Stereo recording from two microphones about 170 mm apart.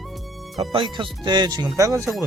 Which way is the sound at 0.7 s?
30° right (ahead or behind).